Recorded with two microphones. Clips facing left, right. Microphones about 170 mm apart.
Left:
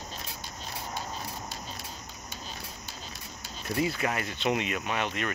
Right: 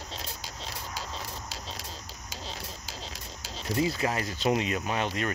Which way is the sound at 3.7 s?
25° right (ahead or behind).